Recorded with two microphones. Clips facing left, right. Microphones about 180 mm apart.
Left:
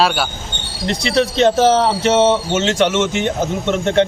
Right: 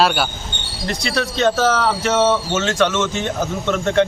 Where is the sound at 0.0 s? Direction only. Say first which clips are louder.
Even; centre (ahead or behind).